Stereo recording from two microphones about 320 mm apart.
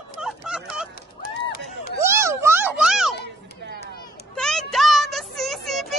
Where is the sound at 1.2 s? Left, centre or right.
Left.